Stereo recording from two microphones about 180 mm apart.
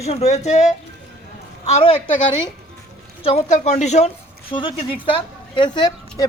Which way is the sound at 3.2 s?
35° left (ahead or behind).